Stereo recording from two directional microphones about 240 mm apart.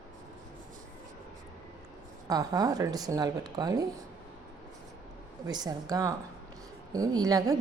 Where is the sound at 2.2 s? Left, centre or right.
Centre.